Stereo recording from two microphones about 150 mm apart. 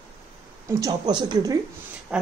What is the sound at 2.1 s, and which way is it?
Speech, 5° right (ahead or behind).